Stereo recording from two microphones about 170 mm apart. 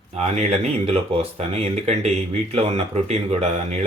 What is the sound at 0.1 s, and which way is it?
Speech, 40° right (ahead or behind).